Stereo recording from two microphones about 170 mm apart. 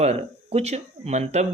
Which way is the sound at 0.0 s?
40° right (ahead or behind).